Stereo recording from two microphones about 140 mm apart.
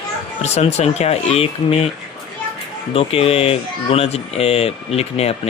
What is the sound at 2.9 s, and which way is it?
Speech, 45° left (ahead or behind).